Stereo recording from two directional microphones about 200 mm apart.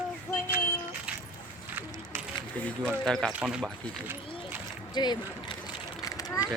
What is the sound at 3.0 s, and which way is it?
Speech, centre (ahead or behind).